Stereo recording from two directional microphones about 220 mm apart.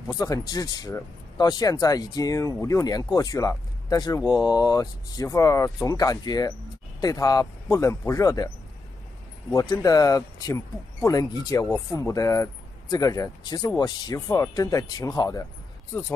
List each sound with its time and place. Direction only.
0.1 s speech: 15° left (ahead or behind)
9.5 s speech: 15° left (ahead or behind)